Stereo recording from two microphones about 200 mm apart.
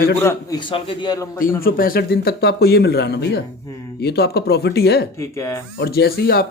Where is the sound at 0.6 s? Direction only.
25° left (ahead or behind).